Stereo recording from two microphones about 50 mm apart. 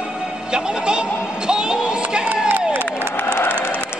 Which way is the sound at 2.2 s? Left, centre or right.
Right.